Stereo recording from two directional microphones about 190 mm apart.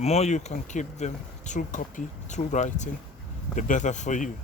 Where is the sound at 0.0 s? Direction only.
35° left (ahead or behind).